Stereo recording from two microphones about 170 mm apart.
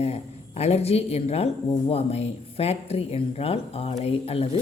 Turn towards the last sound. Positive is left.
turn(degrees=35)  # may be behind; listen again after turning